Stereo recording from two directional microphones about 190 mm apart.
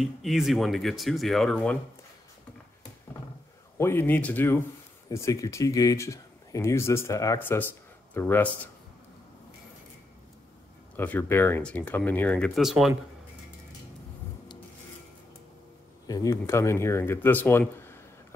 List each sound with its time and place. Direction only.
0.0 s speech: centre (ahead or behind)
3.7 s speech: 15° left (ahead or behind)
11.0 s speech: 10° left (ahead or behind)
16.1 s speech: 15° left (ahead or behind)